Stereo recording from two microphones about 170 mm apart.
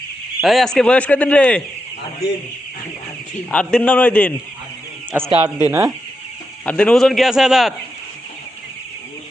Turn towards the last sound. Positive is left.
turn(degrees=0)  # may be behind; listen again after turning